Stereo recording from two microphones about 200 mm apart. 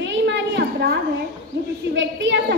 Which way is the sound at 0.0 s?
65° right (ahead or behind).